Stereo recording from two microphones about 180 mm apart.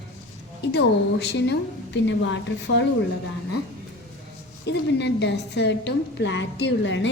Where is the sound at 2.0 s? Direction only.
85° left.